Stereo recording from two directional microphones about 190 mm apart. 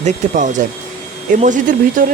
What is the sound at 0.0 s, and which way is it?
Speech, 40° right (ahead or behind).